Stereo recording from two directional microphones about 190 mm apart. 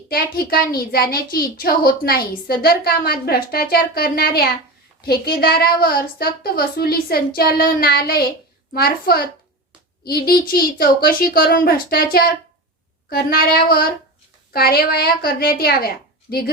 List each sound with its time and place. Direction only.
0.1 s a woman's voice: 50° left (ahead or behind)